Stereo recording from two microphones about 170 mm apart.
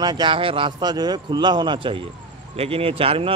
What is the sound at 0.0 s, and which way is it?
Speech, 25° right (ahead or behind).